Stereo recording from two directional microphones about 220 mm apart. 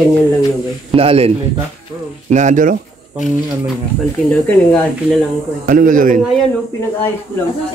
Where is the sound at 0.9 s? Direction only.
25° right (ahead or behind).